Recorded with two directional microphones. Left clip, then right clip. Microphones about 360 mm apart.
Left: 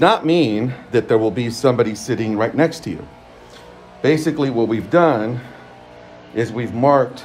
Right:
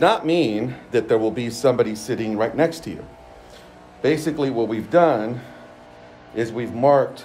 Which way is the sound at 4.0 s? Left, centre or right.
Centre.